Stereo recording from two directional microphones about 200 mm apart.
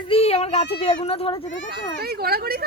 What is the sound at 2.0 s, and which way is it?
Speech, 50° right (ahead or behind).